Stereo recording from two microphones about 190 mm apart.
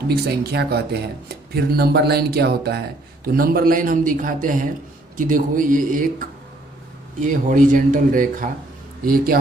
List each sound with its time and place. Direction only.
0.1 s a man's voice: 55° right (ahead or behind)